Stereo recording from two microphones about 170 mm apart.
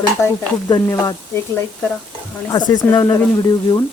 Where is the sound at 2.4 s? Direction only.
25° left (ahead or behind).